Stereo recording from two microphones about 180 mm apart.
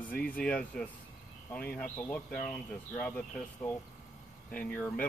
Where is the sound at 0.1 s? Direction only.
50° left (ahead or behind).